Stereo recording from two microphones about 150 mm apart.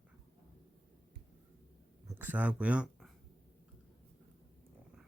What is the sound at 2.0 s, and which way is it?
Speech, 10° right (ahead or behind).